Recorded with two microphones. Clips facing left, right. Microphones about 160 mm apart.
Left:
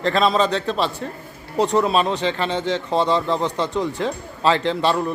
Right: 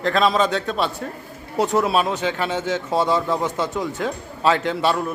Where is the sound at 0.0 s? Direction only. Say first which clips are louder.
Even; centre (ahead or behind).